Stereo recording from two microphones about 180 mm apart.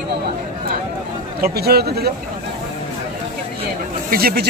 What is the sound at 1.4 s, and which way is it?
Speech, 60° right (ahead or behind).